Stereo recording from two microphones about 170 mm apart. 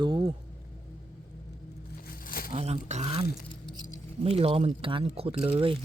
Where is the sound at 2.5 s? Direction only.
35° right (ahead or behind).